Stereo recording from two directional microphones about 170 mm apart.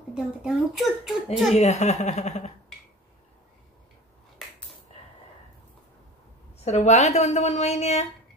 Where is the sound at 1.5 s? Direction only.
40° left (ahead or behind).